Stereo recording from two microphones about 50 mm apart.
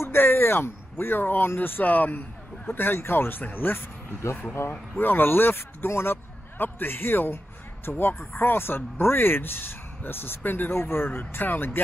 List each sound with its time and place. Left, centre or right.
0.0 s speech: left
7.9 s speech: left
8.3 s speech: left